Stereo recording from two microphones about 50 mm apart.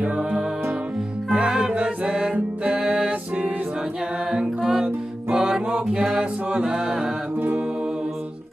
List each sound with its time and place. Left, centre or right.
0.0 s music: right
3.1 s music: right
4.3 s music: centre
6.0 s mantra: centre